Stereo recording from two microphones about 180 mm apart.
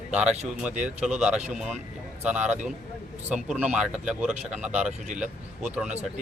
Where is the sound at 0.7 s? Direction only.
40° right (ahead or behind).